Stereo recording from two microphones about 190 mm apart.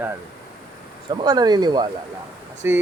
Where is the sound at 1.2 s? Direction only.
20° right (ahead or behind).